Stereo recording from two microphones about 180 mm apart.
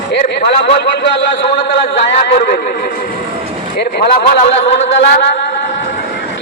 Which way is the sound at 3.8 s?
65° left (ahead or behind).